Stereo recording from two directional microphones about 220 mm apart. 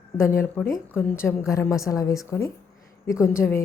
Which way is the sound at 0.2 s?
10° left (ahead or behind).